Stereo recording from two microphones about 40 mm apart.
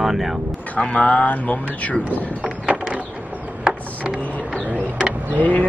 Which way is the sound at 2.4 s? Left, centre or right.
Centre.